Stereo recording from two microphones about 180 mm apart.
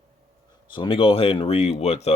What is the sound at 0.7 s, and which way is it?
Speech, 25° left (ahead or behind).